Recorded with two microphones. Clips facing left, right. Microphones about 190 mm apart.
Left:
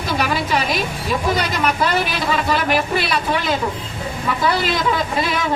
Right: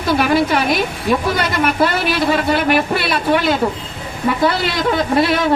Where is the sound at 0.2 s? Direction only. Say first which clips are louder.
Right 3 dB; 55° right (ahead or behind).